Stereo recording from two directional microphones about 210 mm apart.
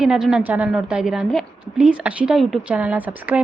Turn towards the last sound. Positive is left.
turn(degrees=-5)  # may be behind; listen again after turning